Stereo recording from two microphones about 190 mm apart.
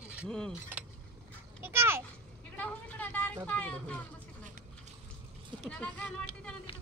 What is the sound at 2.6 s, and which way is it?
Vehicle, 10° left (ahead or behind).